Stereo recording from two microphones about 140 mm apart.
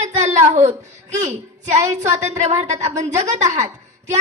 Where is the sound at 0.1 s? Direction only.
55° right (ahead or behind).